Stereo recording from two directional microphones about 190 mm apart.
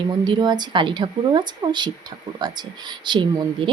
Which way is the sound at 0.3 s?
25° right (ahead or behind).